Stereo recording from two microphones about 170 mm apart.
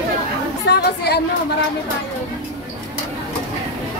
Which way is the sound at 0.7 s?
75° left (ahead or behind).